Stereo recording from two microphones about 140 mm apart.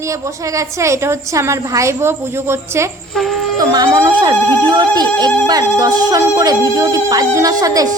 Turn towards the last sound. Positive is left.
turn(degrees=-25)  # may be behind; listen again after turning